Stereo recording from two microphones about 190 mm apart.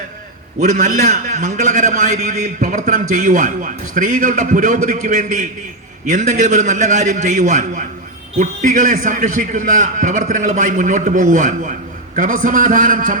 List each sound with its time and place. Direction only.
0.6 s a man's voice: 40° right (ahead or behind)